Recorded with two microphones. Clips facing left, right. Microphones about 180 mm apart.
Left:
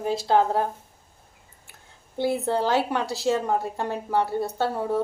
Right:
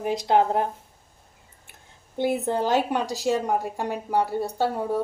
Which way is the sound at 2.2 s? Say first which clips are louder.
Even; 20° right (ahead or behind).